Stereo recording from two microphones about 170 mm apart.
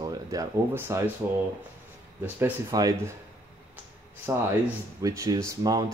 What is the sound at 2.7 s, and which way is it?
Speech, 20° right (ahead or behind).